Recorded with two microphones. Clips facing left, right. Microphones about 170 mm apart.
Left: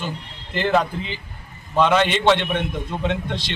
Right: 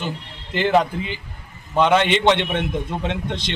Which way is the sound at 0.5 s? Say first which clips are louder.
Right 2 dB; 15° right (ahead or behind).